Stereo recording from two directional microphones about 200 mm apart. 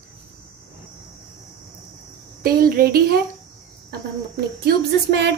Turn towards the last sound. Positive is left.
turn(degrees=-55)  # may be behind; listen again after turning